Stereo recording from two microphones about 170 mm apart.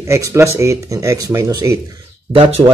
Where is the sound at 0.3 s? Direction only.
15° right (ahead or behind).